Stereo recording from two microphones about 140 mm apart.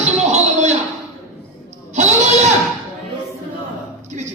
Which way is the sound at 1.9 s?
55° right (ahead or behind).